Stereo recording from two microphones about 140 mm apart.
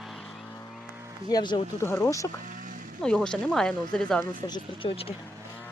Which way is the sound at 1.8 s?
20° left (ahead or behind).